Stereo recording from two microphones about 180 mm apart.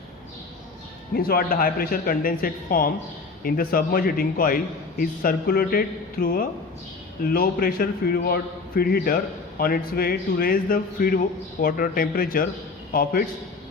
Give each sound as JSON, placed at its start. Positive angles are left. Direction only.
{"t": 1.1, "sound": "a man's voice", "side_deg": 55}